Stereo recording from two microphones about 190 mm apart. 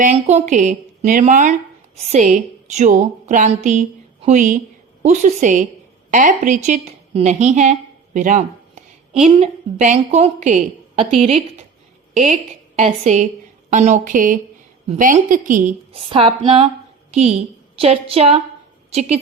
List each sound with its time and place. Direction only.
0.0 s a woman's voice: 40° right (ahead or behind)
7.5 s a sound: 40° right (ahead or behind)
9.4 s a woman's voice: 35° right (ahead or behind)
15.9 s a woman's voice: 30° right (ahead or behind)